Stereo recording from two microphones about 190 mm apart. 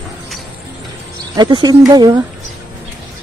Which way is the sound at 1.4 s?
20° right (ahead or behind).